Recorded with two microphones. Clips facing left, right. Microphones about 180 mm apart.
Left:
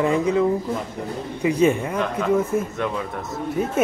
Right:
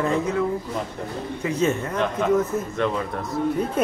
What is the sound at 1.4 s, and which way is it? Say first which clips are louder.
A man's voice: left 5 dB; 15° left (ahead or behind).